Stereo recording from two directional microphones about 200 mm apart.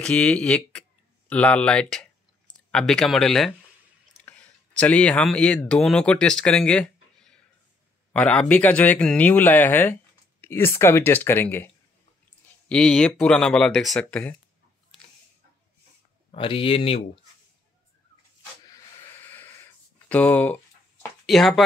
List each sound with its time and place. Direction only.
0.0 s speech: 5° left (ahead or behind)
16.3 s speech: 25° left (ahead or behind)
19.2 s wheeze: 10° left (ahead or behind)
20.1 s speech: 5° left (ahead or behind)